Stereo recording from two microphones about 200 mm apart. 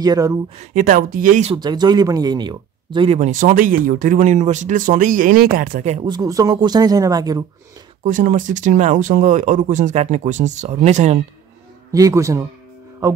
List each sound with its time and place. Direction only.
0.0 s a man's voice: 15° right (ahead or behind)
0.6 s speech: 40° right (ahead or behind)
1.5 s speech: 20° right (ahead or behind)
3.2 s speech: 40° right (ahead or behind)
6.0 s speech: 20° right (ahead or behind)
8.0 s speech: 40° right (ahead or behind)
11.9 s a man's voice: 15° right (ahead or behind)